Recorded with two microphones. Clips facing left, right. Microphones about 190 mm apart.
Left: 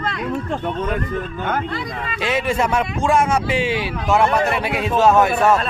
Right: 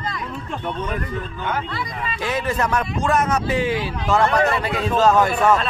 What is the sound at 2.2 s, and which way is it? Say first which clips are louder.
Speech: left 3 dB; 80° left.